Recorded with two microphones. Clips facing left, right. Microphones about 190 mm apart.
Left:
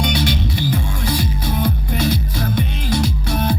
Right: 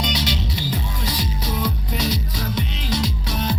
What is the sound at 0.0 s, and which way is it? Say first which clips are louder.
Music: left 5 dB; 55° left (ahead or behind).